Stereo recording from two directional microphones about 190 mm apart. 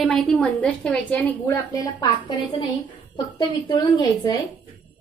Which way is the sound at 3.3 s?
25° left (ahead or behind).